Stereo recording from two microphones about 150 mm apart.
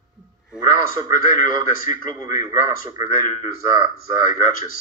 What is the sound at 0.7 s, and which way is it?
A man's voice, 60° left (ahead or behind).